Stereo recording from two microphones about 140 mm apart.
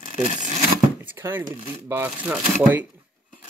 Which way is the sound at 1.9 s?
15° right (ahead or behind).